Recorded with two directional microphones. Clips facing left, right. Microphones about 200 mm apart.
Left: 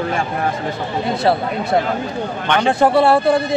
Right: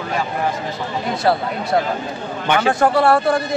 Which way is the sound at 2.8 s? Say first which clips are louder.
Left 3 dB; 25° left (ahead or behind).